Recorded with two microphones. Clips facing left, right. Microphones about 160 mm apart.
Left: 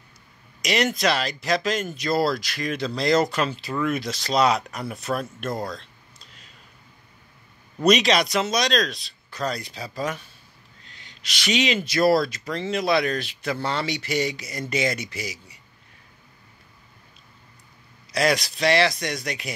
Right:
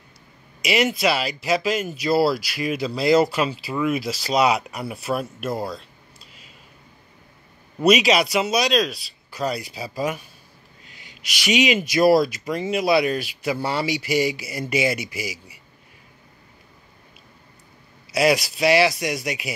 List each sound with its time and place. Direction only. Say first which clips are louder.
0.6 s speech: right 2 dB; 5° right (ahead or behind)
7.8 s speech: right 2 dB; 5° right (ahead or behind)
18.1 s speech: right 3 dB; 10° right (ahead or behind)